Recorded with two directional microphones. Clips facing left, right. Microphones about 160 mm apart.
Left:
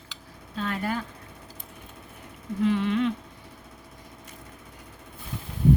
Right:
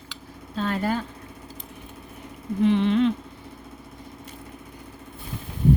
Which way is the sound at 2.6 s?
25° right (ahead or behind).